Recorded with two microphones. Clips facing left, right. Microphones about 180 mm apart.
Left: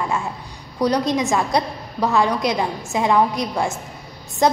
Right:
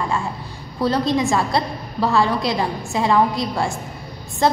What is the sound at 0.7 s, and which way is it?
A woman's voice, 15° left (ahead or behind).